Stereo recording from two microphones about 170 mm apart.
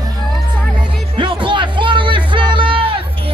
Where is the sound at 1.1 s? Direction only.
30° right (ahead or behind).